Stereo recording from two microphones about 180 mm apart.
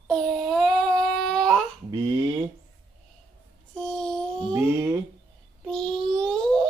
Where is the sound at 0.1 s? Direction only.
5° left (ahead or behind).